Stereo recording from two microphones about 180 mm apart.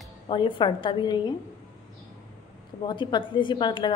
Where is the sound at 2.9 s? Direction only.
25° left (ahead or behind).